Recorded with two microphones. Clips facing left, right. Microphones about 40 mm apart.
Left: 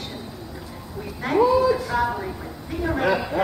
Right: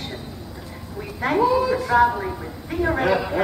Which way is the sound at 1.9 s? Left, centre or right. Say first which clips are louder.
Right 6 dB; centre.